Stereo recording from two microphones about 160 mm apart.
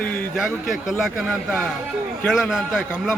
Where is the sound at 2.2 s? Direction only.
Centre (ahead or behind).